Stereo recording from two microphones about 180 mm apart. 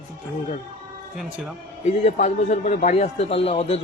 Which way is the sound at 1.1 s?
Centre (ahead or behind).